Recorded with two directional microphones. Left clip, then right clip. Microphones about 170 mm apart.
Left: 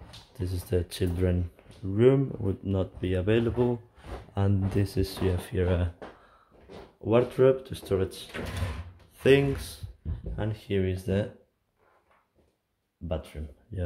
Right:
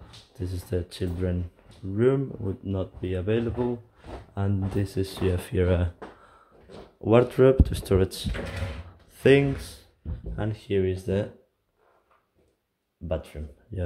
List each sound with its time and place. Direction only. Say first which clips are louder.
0.4 s speech: left 1 dB; centre (ahead or behind)
4.7 s speech: right 2 dB; centre (ahead or behind)
5.3 s speech: right 3 dB; 20° right (ahead or behind)
9.2 s speech: right 2 dB; 10° right (ahead or behind)
13.1 s speech: right 4 dB; 15° right (ahead or behind)